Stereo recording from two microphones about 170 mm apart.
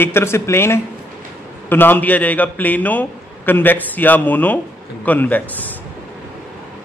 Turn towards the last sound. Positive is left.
turn(degrees=10)  # may be behind; listen again after turning